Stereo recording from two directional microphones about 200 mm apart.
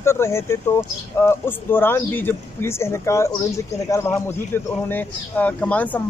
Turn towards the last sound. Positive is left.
turn(degrees=10)  # may be behind; listen again after turning